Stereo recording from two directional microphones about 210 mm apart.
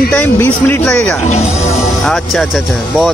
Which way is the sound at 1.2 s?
30° left (ahead or behind).